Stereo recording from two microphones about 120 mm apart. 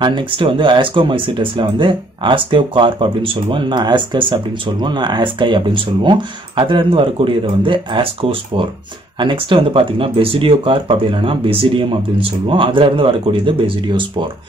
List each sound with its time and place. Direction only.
0.0 s speech: 45° right (ahead or behind)